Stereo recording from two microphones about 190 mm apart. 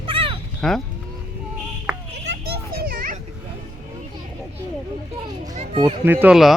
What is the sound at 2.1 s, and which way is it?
Children playing, 60° right (ahead or behind).